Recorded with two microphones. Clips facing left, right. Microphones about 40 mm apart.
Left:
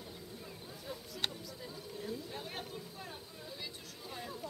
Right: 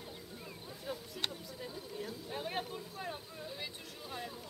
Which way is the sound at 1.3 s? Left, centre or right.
Centre.